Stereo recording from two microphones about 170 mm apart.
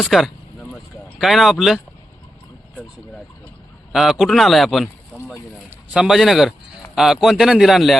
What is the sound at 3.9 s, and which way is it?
Speech, centre (ahead or behind).